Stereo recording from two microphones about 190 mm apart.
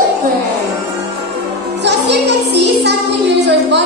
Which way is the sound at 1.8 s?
65° right (ahead or behind).